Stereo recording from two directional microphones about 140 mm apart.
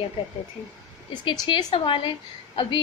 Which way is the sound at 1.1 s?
30° left (ahead or behind).